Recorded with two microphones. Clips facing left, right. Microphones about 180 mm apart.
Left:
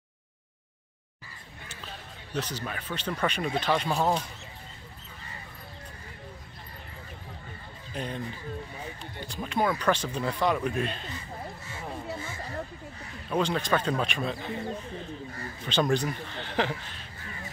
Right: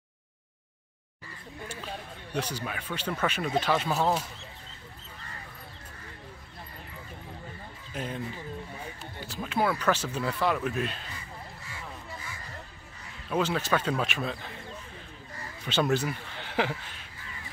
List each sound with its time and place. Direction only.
2.3 s speech: 10° right (ahead or behind)
7.9 s speech: 5° right (ahead or behind)
11.7 s music: 30° left (ahead or behind)
13.3 s speech: 5° right (ahead or behind)
15.6 s speech: 5° right (ahead or behind)